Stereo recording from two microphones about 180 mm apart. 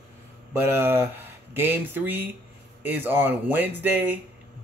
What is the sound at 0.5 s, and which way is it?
Speech, 10° right (ahead or behind).